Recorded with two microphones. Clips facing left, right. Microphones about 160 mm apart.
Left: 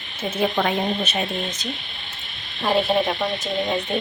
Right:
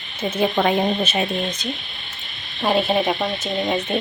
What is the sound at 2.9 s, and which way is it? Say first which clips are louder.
Speech: left 1 dB; centre (ahead or behind).